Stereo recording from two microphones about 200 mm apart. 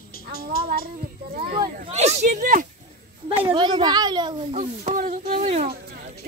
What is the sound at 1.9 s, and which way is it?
Speech, 35° right (ahead or behind).